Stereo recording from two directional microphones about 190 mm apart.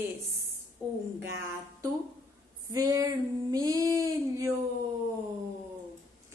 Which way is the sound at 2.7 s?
20° right (ahead or behind).